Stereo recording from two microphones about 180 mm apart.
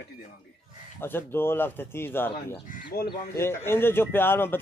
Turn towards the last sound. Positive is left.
turn(degrees=10)  # may be behind; listen again after turning